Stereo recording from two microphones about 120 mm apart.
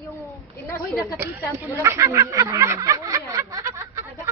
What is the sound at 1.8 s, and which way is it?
Snicker, 25° right (ahead or behind).